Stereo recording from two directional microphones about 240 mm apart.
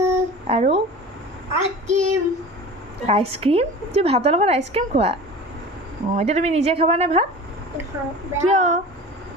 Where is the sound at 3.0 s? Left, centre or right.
Right.